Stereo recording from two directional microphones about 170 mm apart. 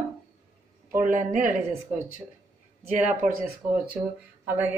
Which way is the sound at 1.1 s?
50° right (ahead or behind).